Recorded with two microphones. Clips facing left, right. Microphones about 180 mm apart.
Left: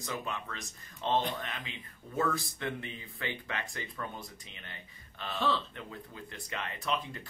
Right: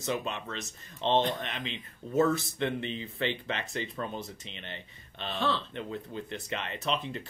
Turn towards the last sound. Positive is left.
turn(degrees=-25)  # may be behind; listen again after turning